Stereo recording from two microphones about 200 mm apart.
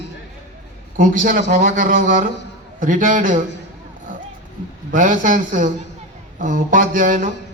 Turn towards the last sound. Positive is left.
turn(degrees=-40)  # may be behind; listen again after turning